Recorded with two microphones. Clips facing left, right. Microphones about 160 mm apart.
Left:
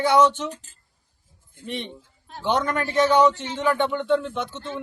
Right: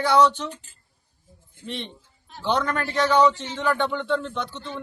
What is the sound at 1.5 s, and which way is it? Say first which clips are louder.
Speech: left 2 dB; 55° left (ahead or behind).